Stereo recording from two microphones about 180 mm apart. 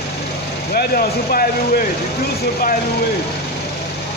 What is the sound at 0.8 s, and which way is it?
Speech, 55° left (ahead or behind).